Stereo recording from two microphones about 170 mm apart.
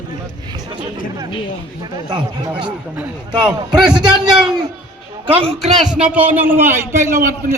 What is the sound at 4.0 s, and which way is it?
Speech, 25° right (ahead or behind).